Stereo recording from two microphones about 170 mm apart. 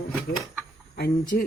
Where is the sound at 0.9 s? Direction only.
65° left (ahead or behind).